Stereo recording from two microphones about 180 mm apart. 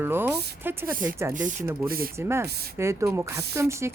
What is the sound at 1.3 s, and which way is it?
Speech, 45° right (ahead or behind).